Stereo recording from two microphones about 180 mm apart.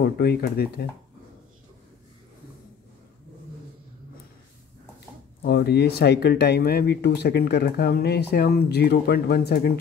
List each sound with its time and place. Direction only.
0.0 s speech: 60° left (ahead or behind)
5.4 s speech: 60° left (ahead or behind)